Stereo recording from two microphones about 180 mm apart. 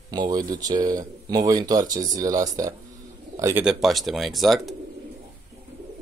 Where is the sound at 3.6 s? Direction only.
Centre (ahead or behind).